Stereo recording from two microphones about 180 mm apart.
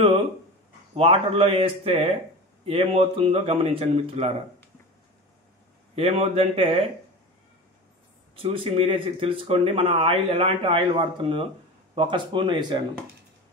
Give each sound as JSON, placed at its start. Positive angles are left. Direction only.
{"t": 0.9, "sound": "speech", "side_deg": -30}
{"t": 5.9, "sound": "speech", "side_deg": -35}
{"t": 8.4, "sound": "speech", "side_deg": -30}